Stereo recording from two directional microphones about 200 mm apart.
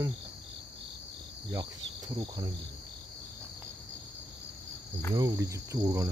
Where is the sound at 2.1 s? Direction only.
25° right (ahead or behind).